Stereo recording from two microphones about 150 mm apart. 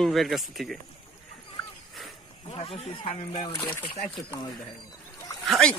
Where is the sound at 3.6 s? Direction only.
10° left (ahead or behind).